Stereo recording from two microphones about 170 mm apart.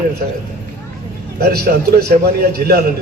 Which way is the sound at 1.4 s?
70° right (ahead or behind).